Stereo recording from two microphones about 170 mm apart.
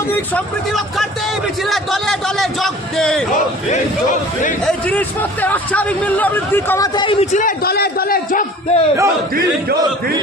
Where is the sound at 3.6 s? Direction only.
50° left (ahead or behind).